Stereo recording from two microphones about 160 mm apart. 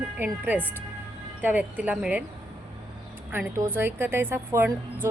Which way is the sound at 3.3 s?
15° right (ahead or behind).